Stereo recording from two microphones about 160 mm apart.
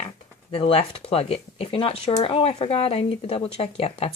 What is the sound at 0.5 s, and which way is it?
Speech, 35° left (ahead or behind).